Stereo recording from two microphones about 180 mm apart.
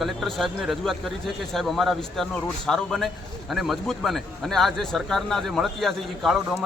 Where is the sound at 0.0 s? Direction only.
Centre (ahead or behind).